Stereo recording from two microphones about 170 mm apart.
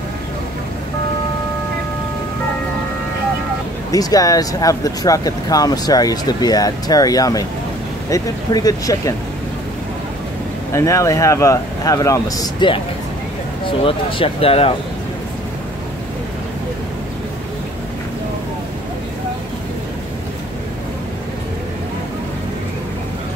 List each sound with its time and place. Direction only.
3.9 s speech: 20° left (ahead or behind)
10.7 s speech: 15° left (ahead or behind); by 14.7 s 35° left (ahead or behind)